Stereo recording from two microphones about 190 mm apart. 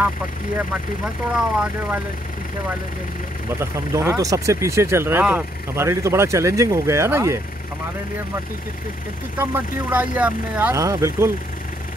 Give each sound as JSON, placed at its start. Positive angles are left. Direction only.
{"t": 1.3, "sound": "speech", "side_deg": -5}
{"t": 3.5, "sound": "speech", "side_deg": -15}
{"t": 9.4, "sound": "speech", "side_deg": -10}